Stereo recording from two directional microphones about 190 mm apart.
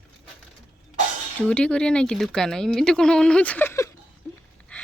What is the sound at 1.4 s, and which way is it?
Speech, 5° left (ahead or behind).